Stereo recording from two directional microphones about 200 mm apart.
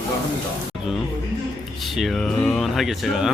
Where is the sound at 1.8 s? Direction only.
Centre (ahead or behind).